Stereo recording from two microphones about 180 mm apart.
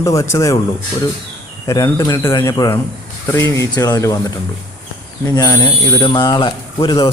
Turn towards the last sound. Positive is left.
turn(degrees=25)  # may be behind; listen again after turning